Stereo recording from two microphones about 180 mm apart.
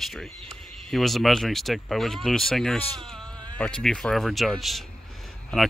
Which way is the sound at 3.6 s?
5° left (ahead or behind).